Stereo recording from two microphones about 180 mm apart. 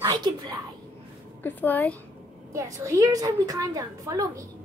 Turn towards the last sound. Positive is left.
turn(degrees=-20)  # may be behind; listen again after turning